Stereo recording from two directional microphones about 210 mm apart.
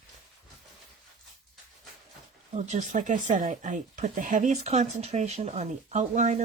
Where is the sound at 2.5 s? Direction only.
35° right (ahead or behind).